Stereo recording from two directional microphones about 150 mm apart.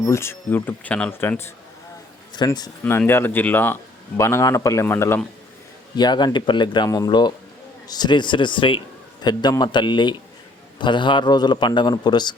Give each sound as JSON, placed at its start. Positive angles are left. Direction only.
{"t": 0.0, "sound": "speech", "side_deg": 15}
{"t": 2.3, "sound": "a man's voice", "side_deg": 30}
{"t": 3.1, "sound": "speech", "side_deg": 15}
{"t": 6.0, "sound": "a man's voice", "side_deg": 30}